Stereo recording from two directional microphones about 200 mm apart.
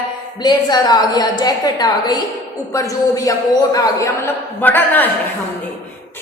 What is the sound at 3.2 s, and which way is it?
A woman's voice, 15° left (ahead or behind).